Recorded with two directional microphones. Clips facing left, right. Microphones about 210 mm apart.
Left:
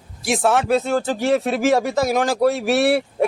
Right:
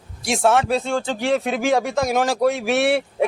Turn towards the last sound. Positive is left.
turn(degrees=0)  # may be behind; listen again after turning